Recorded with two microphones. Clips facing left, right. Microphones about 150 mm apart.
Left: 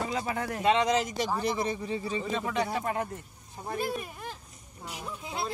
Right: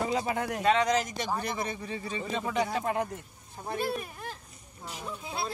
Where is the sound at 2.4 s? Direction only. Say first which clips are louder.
Right 1 dB; 15° right (ahead or behind).